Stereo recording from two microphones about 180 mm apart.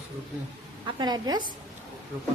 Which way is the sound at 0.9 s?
25° right (ahead or behind).